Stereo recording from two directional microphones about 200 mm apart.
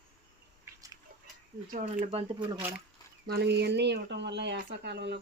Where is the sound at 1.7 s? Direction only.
40° right (ahead or behind).